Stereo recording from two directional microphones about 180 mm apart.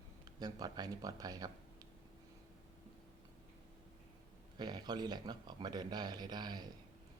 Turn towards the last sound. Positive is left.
turn(degrees=-25)  # may be behind; listen again after turning